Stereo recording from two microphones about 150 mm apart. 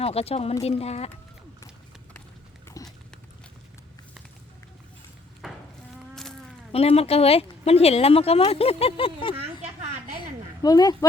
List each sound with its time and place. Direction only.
0.0 s speech: 40° left (ahead or behind)
2.8 s horse: 20° left (ahead or behind)
5.4 s insect: centre (ahead or behind)
6.7 s speech: 40° left (ahead or behind)
9.3 s a sound: 45° right (ahead or behind)
10.2 s a sound: 25° left (ahead or behind)